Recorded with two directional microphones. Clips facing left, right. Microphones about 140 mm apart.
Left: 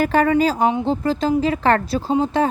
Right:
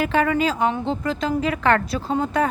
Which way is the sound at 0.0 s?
40° left (ahead or behind).